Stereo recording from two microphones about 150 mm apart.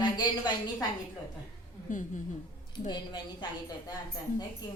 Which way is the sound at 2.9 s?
30° left (ahead or behind).